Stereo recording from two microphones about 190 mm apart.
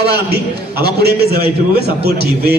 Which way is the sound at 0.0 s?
55° right (ahead or behind).